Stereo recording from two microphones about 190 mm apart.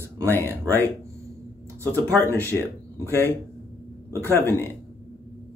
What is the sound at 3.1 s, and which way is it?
Speech, 10° left (ahead or behind).